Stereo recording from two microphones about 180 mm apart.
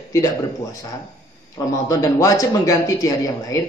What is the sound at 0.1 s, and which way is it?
A man's voice, 20° left (ahead or behind).